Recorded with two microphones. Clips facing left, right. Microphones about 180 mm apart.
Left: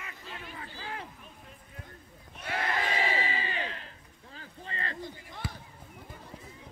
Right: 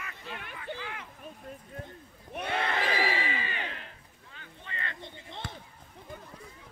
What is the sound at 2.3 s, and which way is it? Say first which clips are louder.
Speech: right 9 dB; 65° right (ahead or behind).